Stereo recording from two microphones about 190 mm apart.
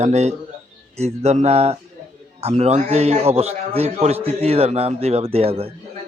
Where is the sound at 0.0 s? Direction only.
35° right (ahead or behind).